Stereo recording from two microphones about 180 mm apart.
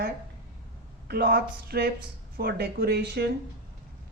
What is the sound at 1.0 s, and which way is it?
A woman's voice, 60° right (ahead or behind).